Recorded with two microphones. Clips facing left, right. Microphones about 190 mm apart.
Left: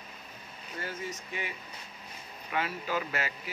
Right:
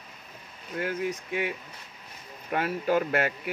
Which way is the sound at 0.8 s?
60° right (ahead or behind).